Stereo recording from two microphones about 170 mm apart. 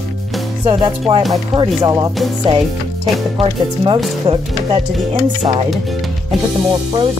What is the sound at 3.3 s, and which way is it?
Speech, 30° right (ahead or behind).